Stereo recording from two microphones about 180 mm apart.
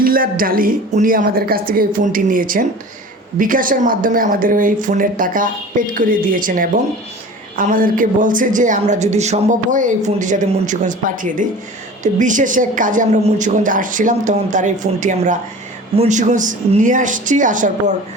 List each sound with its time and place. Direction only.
0.0 s a woman's voice: 50° right (ahead or behind)